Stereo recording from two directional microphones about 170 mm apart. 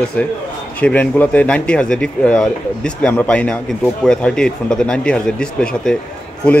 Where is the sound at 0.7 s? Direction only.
10° left (ahead or behind).